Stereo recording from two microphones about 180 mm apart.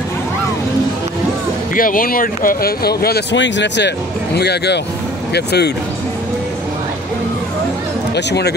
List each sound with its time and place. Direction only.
1.8 s speech: 50° left (ahead or behind)
8.3 s speech: 65° left (ahead or behind)